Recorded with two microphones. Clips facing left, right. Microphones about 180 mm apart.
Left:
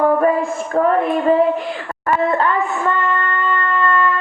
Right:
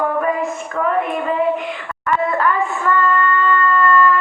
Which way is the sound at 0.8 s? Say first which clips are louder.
Left 4 dB; 35° left (ahead or behind).